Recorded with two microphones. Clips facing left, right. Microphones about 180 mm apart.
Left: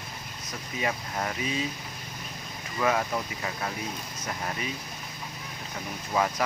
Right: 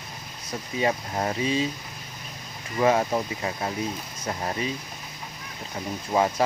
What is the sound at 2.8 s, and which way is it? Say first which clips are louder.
Speech: right 5 dB; 30° right (ahead or behind).